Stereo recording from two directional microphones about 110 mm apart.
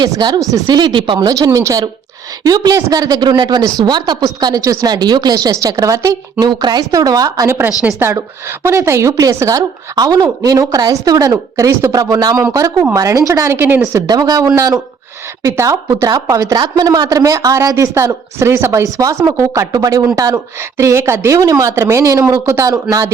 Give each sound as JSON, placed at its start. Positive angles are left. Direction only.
{"t": 0.0, "sound": "a woman's voice", "side_deg": -40}
{"t": 1.5, "sound": "a woman's voice", "side_deg": -30}
{"t": 6.4, "sound": "a woman's voice", "side_deg": -40}
{"t": 13.9, "sound": "a woman's voice", "side_deg": -35}